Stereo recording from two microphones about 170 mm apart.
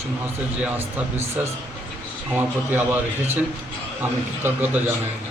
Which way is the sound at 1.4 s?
10° right (ahead or behind).